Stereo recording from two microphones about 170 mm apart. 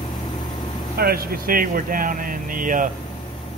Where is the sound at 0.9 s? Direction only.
60° right (ahead or behind).